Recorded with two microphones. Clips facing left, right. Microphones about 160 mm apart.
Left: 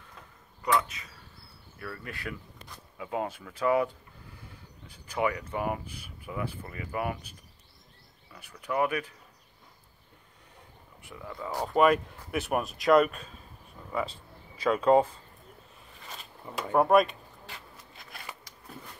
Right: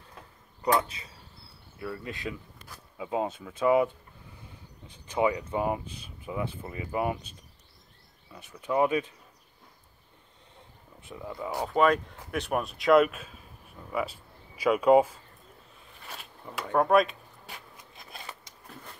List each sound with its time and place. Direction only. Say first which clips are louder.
0.6 s speech: right 2 dB; 30° right (ahead or behind)
1.8 s speech: right 4 dB; 20° right (ahead or behind)
11.0 s speech: right 3 dB; 20° right (ahead or behind)
11.6 s speech: left 1 dB; 5° left (ahead or behind)
16.4 s speech: left 1 dB; 5° left (ahead or behind)
18.5 s a sound: even; 20° right (ahead or behind)